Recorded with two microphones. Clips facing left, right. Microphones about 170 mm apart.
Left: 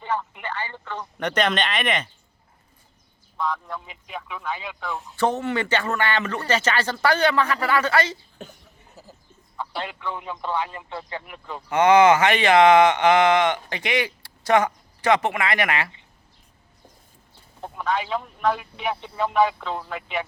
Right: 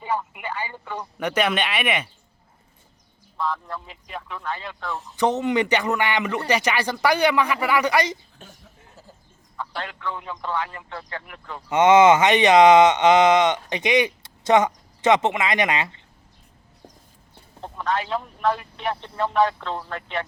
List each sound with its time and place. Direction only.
0.0 s speech: 5° right (ahead or behind)
3.3 s speech: centre (ahead or behind)
5.1 s speech: 15° right (ahead or behind)
9.6 s speech: 15° left (ahead or behind)
11.7 s speech: 20° right (ahead or behind)
17.6 s speech: 5° left (ahead or behind)